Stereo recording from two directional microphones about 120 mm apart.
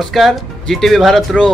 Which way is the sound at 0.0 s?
Centre (ahead or behind).